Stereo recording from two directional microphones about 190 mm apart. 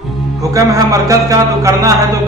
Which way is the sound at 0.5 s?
15° right (ahead or behind).